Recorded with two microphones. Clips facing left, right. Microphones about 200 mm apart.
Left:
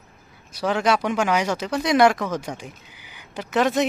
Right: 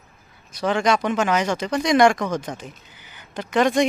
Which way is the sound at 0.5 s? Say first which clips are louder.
Right 1 dB; 5° left (ahead or behind).